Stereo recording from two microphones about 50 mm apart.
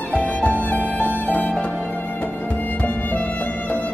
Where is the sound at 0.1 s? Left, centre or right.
Left.